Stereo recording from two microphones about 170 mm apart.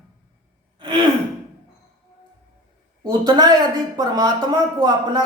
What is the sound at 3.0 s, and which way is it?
Speech, 25° right (ahead or behind).